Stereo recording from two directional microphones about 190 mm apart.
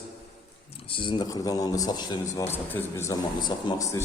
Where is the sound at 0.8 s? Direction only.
25° left (ahead or behind).